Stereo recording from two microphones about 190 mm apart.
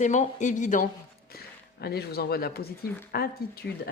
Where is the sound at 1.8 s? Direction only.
55° left (ahead or behind).